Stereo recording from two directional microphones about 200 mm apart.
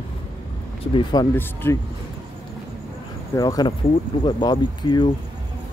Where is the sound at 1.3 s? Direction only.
10° left (ahead or behind).